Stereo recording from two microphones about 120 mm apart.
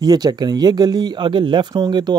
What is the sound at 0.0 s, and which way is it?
Speech, 35° right (ahead or behind).